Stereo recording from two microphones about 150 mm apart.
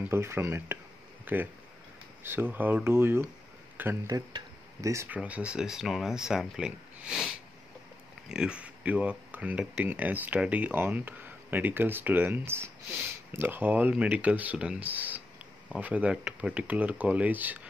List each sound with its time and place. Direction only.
0.1 s speech: 15° right (ahead or behind)